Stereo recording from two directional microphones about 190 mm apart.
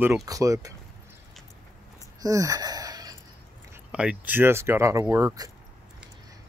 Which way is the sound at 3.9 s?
5° right (ahead or behind).